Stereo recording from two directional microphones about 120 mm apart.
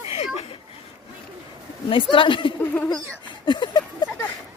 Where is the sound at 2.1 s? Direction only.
45° left (ahead or behind).